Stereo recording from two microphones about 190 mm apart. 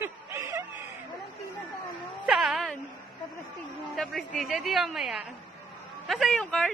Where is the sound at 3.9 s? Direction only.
Centre (ahead or behind).